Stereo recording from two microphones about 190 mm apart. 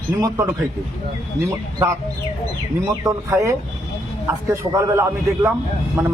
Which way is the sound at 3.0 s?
15° right (ahead or behind).